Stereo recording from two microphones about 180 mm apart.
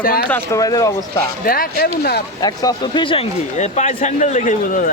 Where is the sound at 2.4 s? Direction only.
20° left (ahead or behind).